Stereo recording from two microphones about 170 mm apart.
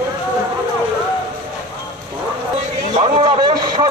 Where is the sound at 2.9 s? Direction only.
30° right (ahead or behind).